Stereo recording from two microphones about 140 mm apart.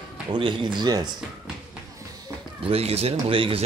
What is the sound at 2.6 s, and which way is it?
Speech, 45° right (ahead or behind).